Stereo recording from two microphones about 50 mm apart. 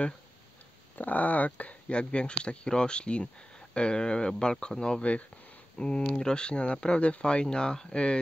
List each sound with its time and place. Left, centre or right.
0.9 s speech: left